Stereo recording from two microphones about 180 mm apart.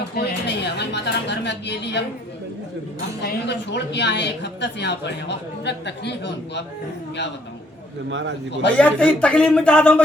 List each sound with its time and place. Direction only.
0.1 s a woman's voice: 65° left (ahead or behind)
3.2 s a woman's voice: 70° left (ahead or behind)
8.1 s a man's voice: 85° right
8.6 s a man's voice: 5° left (ahead or behind)